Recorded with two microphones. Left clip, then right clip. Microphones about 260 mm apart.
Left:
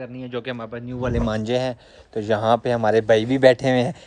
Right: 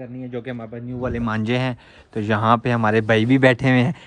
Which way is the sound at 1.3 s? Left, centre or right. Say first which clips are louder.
Right 1 dB; centre.